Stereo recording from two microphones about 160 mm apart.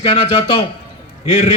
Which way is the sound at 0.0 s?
35° left (ahead or behind).